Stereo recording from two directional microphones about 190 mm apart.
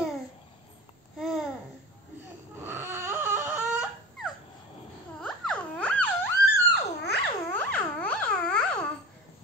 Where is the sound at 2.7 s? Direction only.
15° right (ahead or behind).